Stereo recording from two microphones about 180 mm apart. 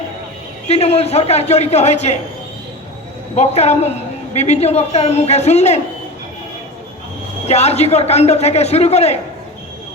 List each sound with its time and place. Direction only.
0.7 s a man's voice: 35° left (ahead or behind)
3.3 s a man's voice: 35° left (ahead or behind)
7.4 s a man's voice: 35° left (ahead or behind)